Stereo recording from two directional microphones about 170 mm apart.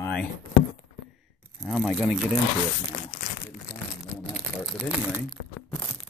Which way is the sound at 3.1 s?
50° left (ahead or behind).